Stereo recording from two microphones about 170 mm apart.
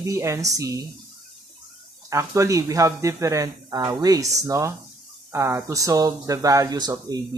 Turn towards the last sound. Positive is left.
turn(degrees=-20)  # may be behind; listen again after turning